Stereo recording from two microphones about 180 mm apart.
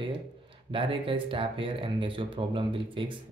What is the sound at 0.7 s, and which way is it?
Speech, 30° right (ahead or behind).